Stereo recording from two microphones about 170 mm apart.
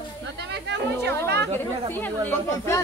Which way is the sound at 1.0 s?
80° right.